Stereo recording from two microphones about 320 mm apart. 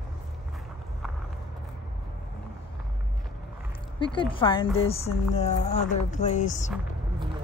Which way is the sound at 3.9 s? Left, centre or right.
Centre.